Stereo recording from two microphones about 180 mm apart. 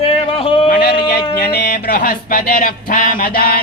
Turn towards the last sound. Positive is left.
turn(degrees=55)  # may be behind; listen again after turning